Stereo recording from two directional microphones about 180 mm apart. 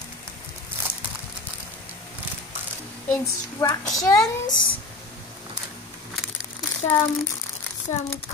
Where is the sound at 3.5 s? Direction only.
20° left (ahead or behind).